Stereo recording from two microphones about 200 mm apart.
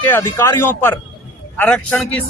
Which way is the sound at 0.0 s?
10° left (ahead or behind).